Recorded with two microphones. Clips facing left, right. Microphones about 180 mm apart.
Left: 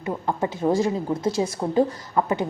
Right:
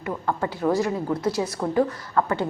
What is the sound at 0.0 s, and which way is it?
A woman's voice, 25° left (ahead or behind).